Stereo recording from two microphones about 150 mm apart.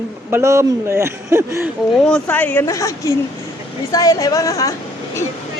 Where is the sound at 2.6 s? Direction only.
20° left (ahead or behind).